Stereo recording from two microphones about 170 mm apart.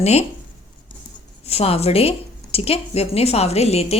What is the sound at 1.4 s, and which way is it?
A woman's voice, 35° left (ahead or behind).